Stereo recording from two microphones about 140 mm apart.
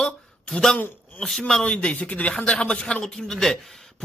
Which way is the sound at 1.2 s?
5° left (ahead or behind).